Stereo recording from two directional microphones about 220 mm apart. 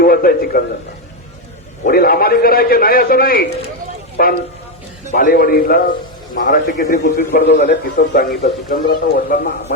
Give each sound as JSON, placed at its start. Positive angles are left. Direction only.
{"t": 0.0, "sound": "a man's voice", "side_deg": 40}
{"t": 1.8, "sound": "a man's voice", "side_deg": 40}
{"t": 7.4, "sound": "a man's voice", "side_deg": 50}